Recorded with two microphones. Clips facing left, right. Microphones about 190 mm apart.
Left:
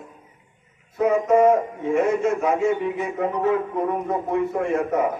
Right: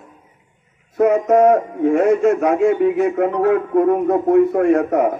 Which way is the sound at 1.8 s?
65° right (ahead or behind).